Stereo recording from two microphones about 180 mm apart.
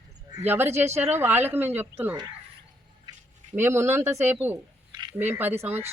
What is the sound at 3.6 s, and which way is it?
Speech, 15° right (ahead or behind).